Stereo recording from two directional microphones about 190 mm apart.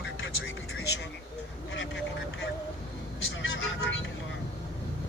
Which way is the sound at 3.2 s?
90° left.